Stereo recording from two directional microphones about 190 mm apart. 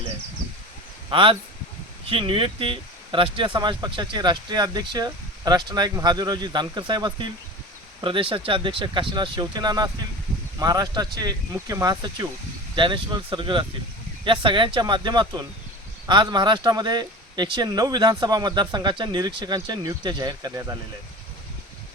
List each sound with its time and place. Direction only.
1.1 s speech: 25° right (ahead or behind)